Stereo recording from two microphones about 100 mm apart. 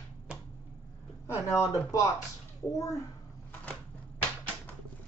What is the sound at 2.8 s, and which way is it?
Speech, 35° left (ahead or behind).